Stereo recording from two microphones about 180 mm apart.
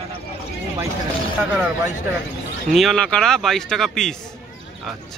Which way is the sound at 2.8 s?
Centre (ahead or behind).